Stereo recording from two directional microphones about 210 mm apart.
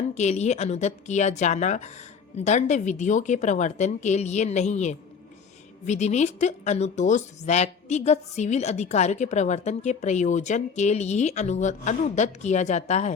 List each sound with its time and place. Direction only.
0.1 s a woman's voice: 30° left (ahead or behind)